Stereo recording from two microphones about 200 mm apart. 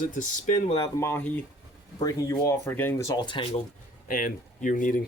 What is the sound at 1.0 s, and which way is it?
Speech, 10° left (ahead or behind).